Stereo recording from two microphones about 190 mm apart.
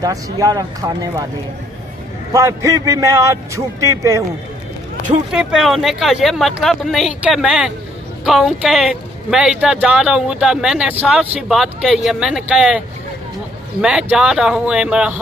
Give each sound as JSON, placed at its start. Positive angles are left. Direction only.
{"t": 0.0, "sound": "speech", "side_deg": -20}
{"t": 2.3, "sound": "a man's voice", "side_deg": -15}
{"t": 5.3, "sound": "speech", "side_deg": -5}